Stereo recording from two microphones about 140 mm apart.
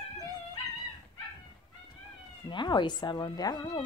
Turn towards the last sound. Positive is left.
turn(degrees=30)  # may be behind; listen again after turning